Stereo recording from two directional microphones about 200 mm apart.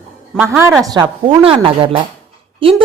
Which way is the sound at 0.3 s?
10° right (ahead or behind).